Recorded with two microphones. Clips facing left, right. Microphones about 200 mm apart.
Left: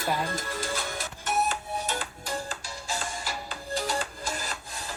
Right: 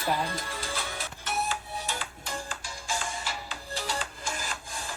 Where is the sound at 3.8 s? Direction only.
45° left (ahead or behind).